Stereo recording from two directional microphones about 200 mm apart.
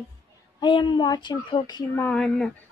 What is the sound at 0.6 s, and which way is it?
A woman's voice, 25° left (ahead or behind).